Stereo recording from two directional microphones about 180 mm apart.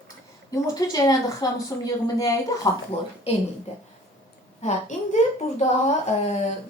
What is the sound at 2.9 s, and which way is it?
Speech, 35° left (ahead or behind).